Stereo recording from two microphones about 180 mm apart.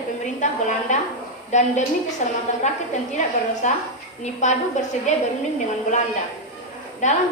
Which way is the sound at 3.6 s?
40° left (ahead or behind).